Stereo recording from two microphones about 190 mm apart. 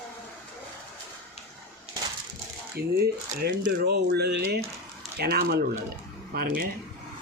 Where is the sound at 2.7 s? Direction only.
55° right (ahead or behind).